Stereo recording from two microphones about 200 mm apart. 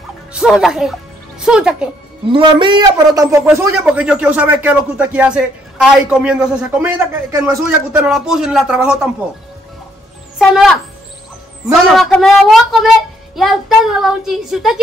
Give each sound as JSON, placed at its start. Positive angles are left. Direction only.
{"t": 0.3, "sound": "a woman's voice", "side_deg": -5}
{"t": 2.3, "sound": "a man's voice", "side_deg": -25}
{"t": 10.4, "sound": "a woman's voice", "side_deg": 0}
{"t": 11.9, "sound": "a woman's voice", "side_deg": 0}